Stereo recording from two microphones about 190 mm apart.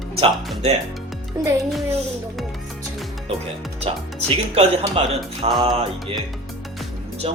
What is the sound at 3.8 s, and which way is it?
Speech, 30° right (ahead or behind).